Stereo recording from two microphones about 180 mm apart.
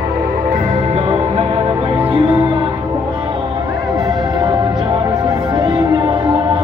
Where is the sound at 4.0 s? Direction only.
20° right (ahead or behind).